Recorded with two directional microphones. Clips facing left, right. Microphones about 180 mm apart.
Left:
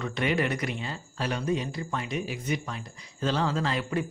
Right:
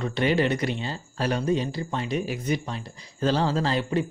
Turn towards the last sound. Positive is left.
turn(degrees=-30)  # may be behind; listen again after turning